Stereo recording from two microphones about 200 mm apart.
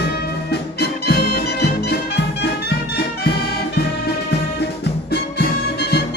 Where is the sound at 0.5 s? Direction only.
55° left (ahead or behind).